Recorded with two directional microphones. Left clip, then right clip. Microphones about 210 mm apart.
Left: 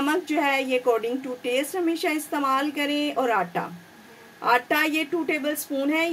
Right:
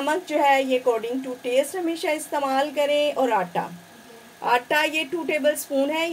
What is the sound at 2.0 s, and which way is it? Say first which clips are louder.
A woman's voice: even; 25° left (ahead or behind).